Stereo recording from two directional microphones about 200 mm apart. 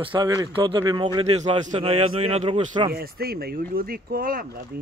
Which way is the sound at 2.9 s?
50° right (ahead or behind).